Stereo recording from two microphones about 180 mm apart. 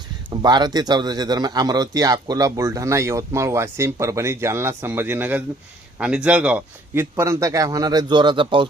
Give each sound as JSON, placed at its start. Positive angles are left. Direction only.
{"t": 0.3, "sound": "a man's voice", "side_deg": -25}